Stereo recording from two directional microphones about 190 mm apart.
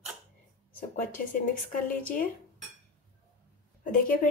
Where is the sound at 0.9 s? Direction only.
45° left (ahead or behind).